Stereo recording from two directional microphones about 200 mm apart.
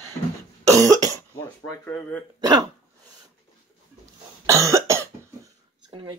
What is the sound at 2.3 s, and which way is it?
Speech, 20° right (ahead or behind).